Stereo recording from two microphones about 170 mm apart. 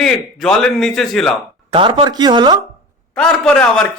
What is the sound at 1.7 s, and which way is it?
Speech, 30° right (ahead or behind).